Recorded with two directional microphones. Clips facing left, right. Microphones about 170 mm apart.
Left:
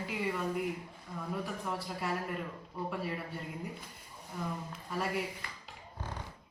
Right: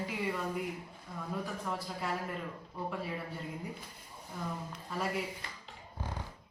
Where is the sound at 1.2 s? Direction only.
5° left (ahead or behind).